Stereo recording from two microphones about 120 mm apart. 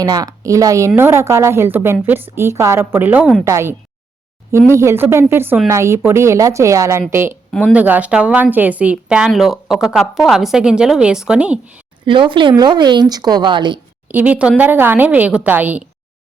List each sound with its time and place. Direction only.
0.0 s a woman's voice: 30° right (ahead or behind); by 11.8 s 10° right (ahead or behind)
12.0 s a woman's voice: 45° right (ahead or behind)
14.1 s a woman's voice: 15° right (ahead or behind)